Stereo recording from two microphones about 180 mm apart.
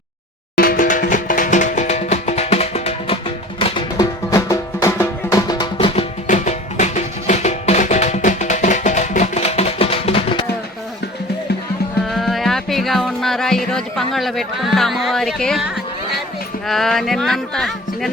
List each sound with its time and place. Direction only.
0.5 s music: 55° left (ahead or behind); by 5.6 s 20° left (ahead or behind)
5.7 s music: 35° left (ahead or behind)
12.0 s music: centre (ahead or behind)
16.6 s speech: centre (ahead or behind)